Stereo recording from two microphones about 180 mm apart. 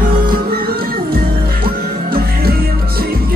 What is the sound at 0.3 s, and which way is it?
Music, 55° right (ahead or behind).